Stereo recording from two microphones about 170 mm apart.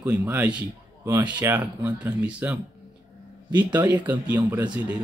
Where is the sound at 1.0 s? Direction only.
20° right (ahead or behind).